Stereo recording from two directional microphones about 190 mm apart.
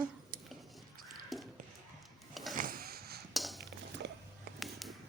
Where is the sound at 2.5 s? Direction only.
50° right (ahead or behind).